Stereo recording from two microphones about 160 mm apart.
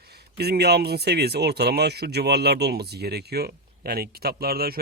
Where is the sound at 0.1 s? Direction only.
85° right.